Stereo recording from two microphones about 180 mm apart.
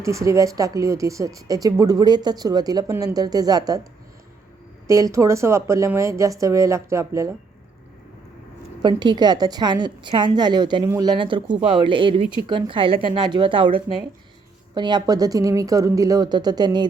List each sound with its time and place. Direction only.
0.0 s speech: 15° right (ahead or behind)
4.9 s a woman's voice: 15° right (ahead or behind)
8.8 s speech: 25° right (ahead or behind)
14.8 s speech: 25° right (ahead or behind)